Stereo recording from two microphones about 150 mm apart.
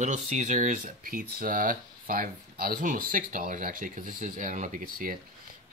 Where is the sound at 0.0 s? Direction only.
50° right (ahead or behind).